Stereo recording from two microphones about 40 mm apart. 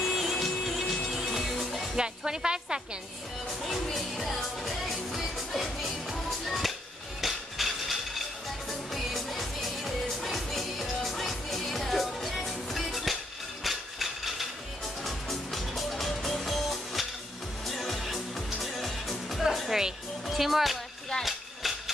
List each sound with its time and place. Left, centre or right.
0.0 s music: centre
2.0 s a woman's voice: centre
3.4 s music: centre
13.7 s a sound: centre
15.0 s music: centre
20.2 s speech: centre
21.2 s a sound: centre